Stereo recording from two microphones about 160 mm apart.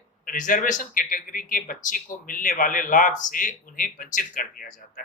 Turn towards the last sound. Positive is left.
turn(degrees=55)  # may be behind; listen again after turning